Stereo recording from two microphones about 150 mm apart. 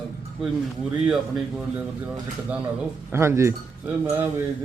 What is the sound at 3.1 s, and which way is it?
Speech, 15° right (ahead or behind).